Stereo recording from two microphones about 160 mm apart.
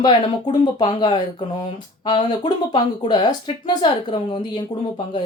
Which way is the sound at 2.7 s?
25° left (ahead or behind).